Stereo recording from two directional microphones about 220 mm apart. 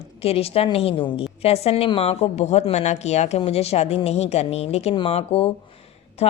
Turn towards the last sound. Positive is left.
turn(degrees=30)  # may be behind; listen again after turning